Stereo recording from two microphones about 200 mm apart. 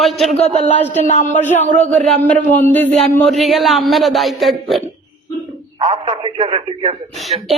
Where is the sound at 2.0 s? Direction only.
5° left (ahead or behind).